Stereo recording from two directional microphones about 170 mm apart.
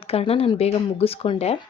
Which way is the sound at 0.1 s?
35° left (ahead or behind).